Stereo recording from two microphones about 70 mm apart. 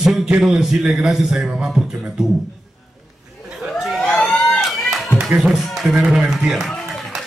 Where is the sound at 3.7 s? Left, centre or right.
Centre.